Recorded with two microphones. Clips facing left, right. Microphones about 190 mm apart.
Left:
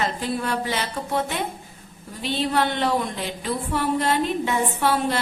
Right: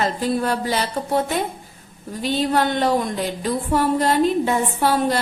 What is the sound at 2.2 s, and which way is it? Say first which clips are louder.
A woman's voice: right 3 dB; 45° right (ahead or behind).